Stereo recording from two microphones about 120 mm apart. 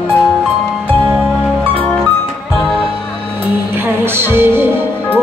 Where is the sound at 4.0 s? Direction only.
20° right (ahead or behind).